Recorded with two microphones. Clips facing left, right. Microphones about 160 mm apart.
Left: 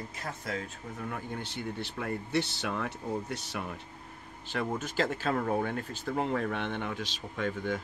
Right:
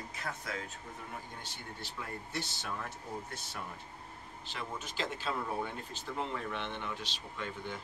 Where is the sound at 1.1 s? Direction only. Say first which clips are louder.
Left 8 dB; 70° left (ahead or behind).